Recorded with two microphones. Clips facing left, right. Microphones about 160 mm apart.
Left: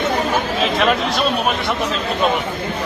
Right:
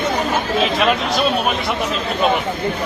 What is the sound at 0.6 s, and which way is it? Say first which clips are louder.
Speech: even; centre (ahead or behind).